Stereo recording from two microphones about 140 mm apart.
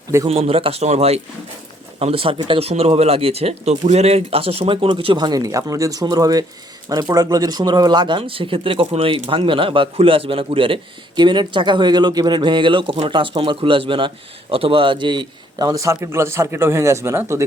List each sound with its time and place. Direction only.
0.3 s a man's voice: 45° right (ahead or behind); by 17.4 s 20° right (ahead or behind)